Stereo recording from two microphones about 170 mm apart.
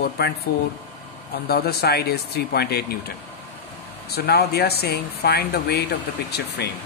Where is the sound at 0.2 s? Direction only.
70° left (ahead or behind).